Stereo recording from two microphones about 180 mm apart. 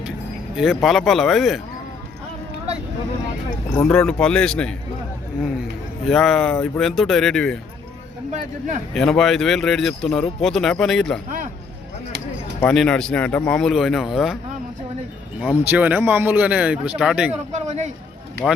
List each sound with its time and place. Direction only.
0.5 s speech: centre (ahead or behind)
3.8 s speech: 5° left (ahead or behind)
6.1 s speech: centre (ahead or behind)
8.3 s speech: 45° right (ahead or behind)
9.0 s speech: centre (ahead or behind)
11.3 s a sound: 45° right (ahead or behind)
12.5 s speech: 5° left (ahead or behind)
15.4 s speech: 10° right (ahead or behind)
17.5 s a sound: 40° right (ahead or behind)
18.4 s speech: 5° left (ahead or behind)